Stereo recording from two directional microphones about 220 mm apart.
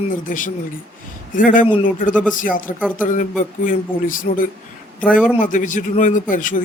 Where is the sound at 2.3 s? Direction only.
40° left (ahead or behind).